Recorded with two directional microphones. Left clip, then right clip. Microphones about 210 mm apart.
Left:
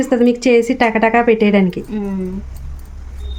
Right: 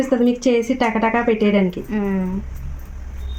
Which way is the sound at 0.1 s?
45° left (ahead or behind).